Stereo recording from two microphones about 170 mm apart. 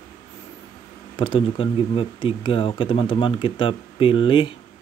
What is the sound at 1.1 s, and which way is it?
Speech, 30° left (ahead or behind).